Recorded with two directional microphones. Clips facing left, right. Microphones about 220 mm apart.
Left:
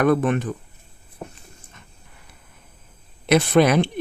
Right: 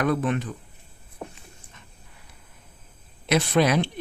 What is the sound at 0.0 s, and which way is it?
Speech, 55° left (ahead or behind).